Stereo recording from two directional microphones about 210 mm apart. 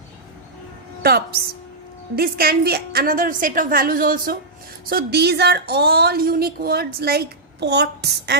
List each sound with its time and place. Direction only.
1.0 s a woman's voice: 45° right (ahead or behind)